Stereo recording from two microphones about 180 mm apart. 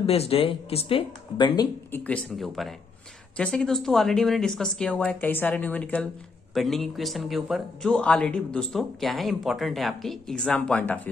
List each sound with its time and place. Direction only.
0.0 s speech: 35° left (ahead or behind)
1.9 s a man's voice: 5° left (ahead or behind)